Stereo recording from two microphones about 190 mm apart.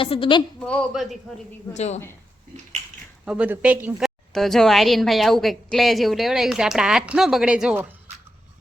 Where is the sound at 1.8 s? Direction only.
35° left (ahead or behind).